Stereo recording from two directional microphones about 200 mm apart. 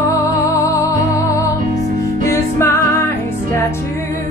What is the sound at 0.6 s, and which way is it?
Music, 15° left (ahead or behind).